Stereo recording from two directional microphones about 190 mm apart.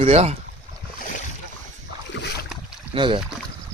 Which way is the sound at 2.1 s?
65° left (ahead or behind).